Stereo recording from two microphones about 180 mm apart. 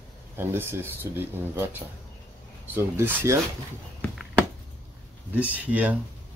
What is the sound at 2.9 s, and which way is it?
Speech, 15° right (ahead or behind).